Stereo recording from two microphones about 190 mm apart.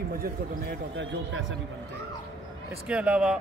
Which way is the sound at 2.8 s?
5° right (ahead or behind).